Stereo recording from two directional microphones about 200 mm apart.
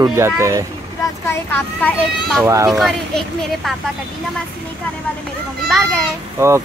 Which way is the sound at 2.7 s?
Centre (ahead or behind).